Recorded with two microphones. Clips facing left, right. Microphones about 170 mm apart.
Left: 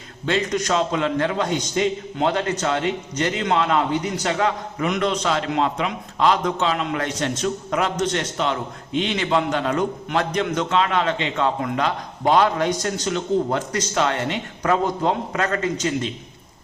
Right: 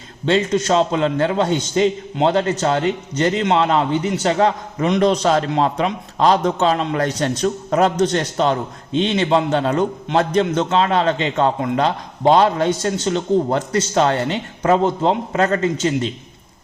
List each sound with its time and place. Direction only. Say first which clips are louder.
0.3 s a man's voice: right 5 dB; 30° right (ahead or behind)